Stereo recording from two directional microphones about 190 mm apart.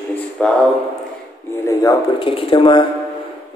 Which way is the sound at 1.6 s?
20° left (ahead or behind).